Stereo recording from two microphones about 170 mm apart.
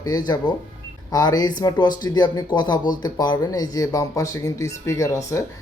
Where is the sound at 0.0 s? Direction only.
20° left (ahead or behind).